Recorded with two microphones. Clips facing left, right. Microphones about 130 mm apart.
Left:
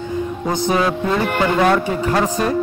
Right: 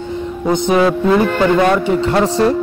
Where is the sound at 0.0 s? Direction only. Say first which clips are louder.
Right 2 dB; 25° right (ahead or behind).